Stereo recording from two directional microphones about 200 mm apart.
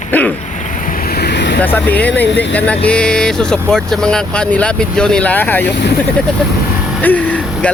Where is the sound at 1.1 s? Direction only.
55° left (ahead or behind).